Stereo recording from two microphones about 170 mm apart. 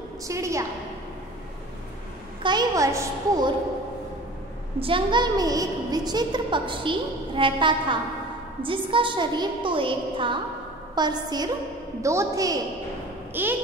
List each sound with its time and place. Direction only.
0.3 s a woman's voice: 20° right (ahead or behind)
2.4 s a woman's voice: 25° right (ahead or behind)
4.7 s a woman's voice: 30° right (ahead or behind)
13.3 s a sound: 10° right (ahead or behind)